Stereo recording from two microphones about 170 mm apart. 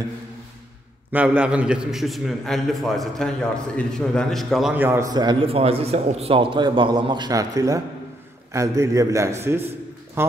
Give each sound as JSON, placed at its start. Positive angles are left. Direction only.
{"t": 1.1, "sound": "a man's voice", "side_deg": -10}
{"t": 4.8, "sound": "a man's voice", "side_deg": -15}